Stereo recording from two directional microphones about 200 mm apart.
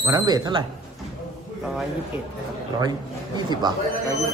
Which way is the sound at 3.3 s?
20° right (ahead or behind).